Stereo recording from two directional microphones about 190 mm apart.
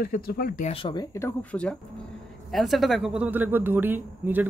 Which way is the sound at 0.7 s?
25° left (ahead or behind).